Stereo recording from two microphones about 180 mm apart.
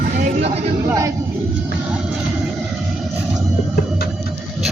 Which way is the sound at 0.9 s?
15° right (ahead or behind).